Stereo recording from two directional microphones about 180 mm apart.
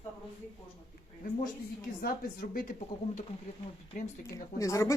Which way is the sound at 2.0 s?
55° left (ahead or behind).